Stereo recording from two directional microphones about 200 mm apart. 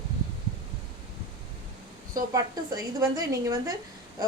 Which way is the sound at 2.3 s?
20° right (ahead or behind).